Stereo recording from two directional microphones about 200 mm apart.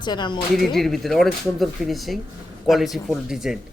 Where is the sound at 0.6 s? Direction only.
Centre (ahead or behind).